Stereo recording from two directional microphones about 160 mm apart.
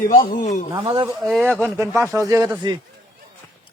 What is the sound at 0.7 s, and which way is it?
Speech, 25° right (ahead or behind).